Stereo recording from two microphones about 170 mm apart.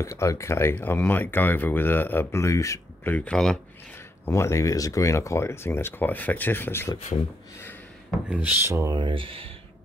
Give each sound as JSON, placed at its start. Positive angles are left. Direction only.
{"t": 0.0, "sound": "speech", "side_deg": 20}
{"t": 4.3, "sound": "speech", "side_deg": 15}
{"t": 8.3, "sound": "speech", "side_deg": -10}
{"t": 8.9, "sound": "speech", "side_deg": -30}